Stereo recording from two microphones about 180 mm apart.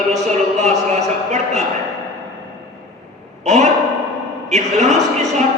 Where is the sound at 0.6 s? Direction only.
40° right (ahead or behind).